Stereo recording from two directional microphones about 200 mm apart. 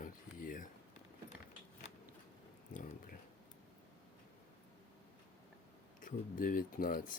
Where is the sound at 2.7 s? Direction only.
40° left (ahead or behind).